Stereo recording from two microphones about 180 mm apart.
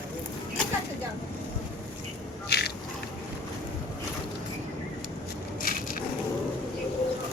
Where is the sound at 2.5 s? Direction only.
65° left (ahead or behind).